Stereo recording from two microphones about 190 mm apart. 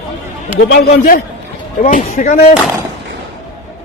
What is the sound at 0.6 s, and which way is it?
Speech, 60° left (ahead or behind).